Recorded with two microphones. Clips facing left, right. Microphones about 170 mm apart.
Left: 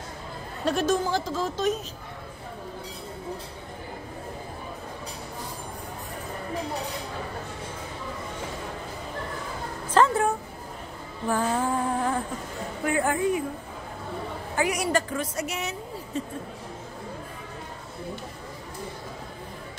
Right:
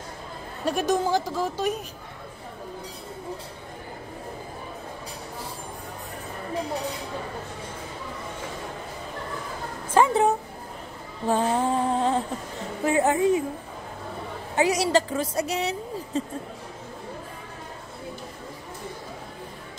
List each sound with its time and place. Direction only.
0.7 s a woman's voice: 15° right (ahead or behind)
9.9 s a sound: 15° right (ahead or behind)
11.2 s music: 20° right (ahead or behind)
12.8 s a woman's voice: 25° right (ahead or behind)
14.5 s a woman's voice: 25° right (ahead or behind)